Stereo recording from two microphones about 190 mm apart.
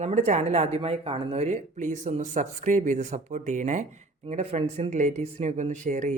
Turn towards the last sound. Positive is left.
turn(degrees=-40)  # may be behind; listen again after turning